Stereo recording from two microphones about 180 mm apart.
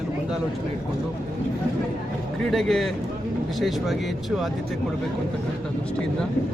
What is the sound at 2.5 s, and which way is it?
Speech, centre (ahead or behind).